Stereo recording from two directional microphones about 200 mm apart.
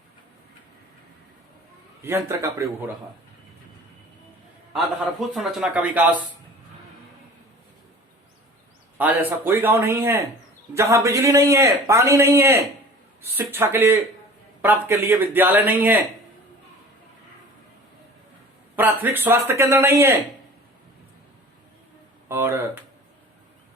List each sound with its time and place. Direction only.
2.0 s a man's voice: 10° right (ahead or behind)
5.3 s a man's voice: centre (ahead or behind)
9.0 s a man's voice: 10° right (ahead or behind)
18.8 s a man's voice: 10° right (ahead or behind)
22.3 s a man's voice: 10° right (ahead or behind)